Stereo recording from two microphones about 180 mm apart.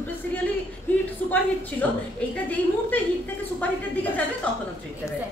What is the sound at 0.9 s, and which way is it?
Speech, 10° left (ahead or behind).